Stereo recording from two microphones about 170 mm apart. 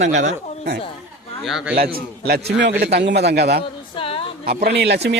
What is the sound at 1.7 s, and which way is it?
Speech, 60° right (ahead or behind).